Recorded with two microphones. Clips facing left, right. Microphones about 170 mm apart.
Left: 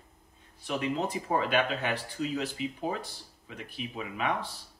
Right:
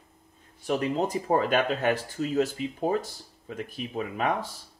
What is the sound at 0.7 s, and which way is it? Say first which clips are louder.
Speech: right 4 dB; 40° right (ahead or behind).